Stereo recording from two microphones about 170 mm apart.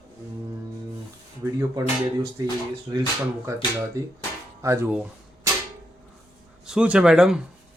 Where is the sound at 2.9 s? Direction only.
20° right (ahead or behind).